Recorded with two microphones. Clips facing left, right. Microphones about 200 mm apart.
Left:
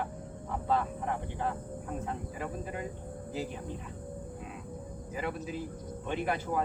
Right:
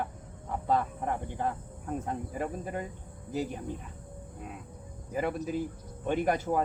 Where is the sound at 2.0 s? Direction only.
45° right (ahead or behind).